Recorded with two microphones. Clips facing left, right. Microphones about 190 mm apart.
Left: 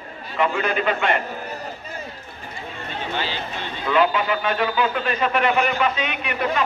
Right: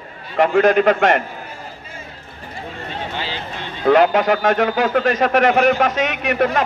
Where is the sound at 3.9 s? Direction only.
75° right (ahead or behind).